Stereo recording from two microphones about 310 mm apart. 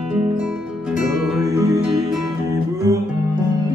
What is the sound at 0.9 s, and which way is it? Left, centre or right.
Music, centre.